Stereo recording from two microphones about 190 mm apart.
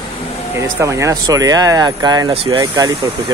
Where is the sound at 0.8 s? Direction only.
15° right (ahead or behind).